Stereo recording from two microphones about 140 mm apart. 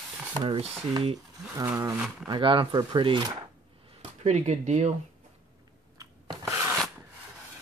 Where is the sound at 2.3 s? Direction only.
35° right (ahead or behind).